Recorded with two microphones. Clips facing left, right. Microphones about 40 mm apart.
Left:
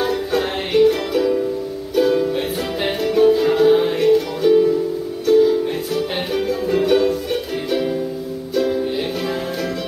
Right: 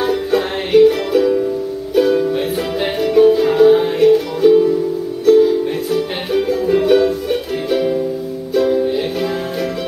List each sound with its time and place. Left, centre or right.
0.0 s music: centre